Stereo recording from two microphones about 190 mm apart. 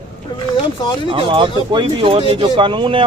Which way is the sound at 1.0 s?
25° right (ahead or behind).